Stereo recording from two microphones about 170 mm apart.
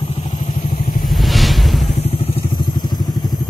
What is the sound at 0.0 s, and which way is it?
Vehicle, 35° left (ahead or behind).